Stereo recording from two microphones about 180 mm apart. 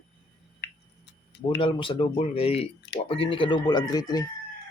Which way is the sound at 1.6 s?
30° left (ahead or behind).